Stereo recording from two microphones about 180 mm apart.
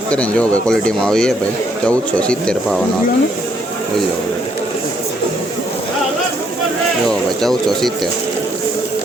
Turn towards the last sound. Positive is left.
turn(degrees=0)  # may be behind; listen again after turning